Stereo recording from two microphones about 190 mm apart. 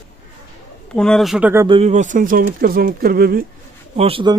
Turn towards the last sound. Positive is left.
turn(degrees=-25)  # may be behind; listen again after turning